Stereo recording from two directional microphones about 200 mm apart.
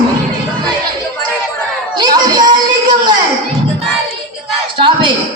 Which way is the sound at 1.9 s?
20° right (ahead or behind).